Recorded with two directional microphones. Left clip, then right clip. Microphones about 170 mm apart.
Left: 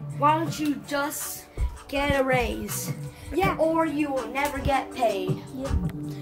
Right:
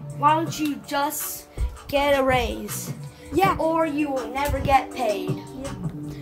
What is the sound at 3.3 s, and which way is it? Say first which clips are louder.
Speech: right 5 dB; 40° right (ahead or behind).